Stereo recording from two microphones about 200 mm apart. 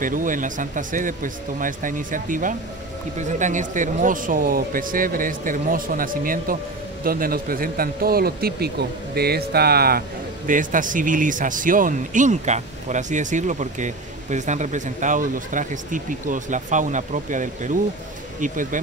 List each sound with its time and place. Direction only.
0.0 s speech: 40° right (ahead or behind)